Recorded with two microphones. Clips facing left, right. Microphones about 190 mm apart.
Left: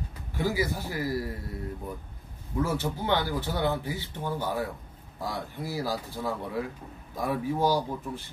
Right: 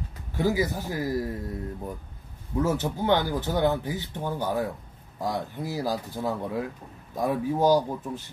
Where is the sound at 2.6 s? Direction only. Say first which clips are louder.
Right 3 dB; 15° right (ahead or behind).